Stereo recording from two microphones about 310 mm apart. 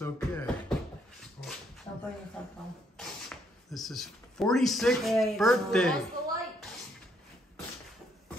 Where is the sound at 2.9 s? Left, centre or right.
Centre.